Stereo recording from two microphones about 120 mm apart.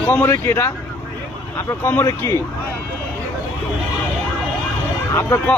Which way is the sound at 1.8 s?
20° left (ahead or behind).